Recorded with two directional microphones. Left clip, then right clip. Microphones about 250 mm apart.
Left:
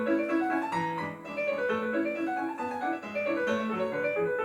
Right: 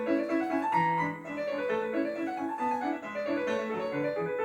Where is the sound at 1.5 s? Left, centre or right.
Left.